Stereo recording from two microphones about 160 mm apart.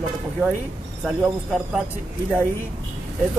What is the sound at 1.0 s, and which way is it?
Speech, 5° right (ahead or behind).